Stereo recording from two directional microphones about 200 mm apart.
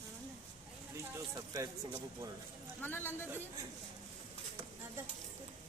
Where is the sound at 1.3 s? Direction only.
20° right (ahead or behind).